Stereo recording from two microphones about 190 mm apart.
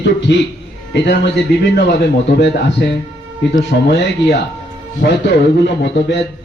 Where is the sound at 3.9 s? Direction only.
65° left (ahead or behind).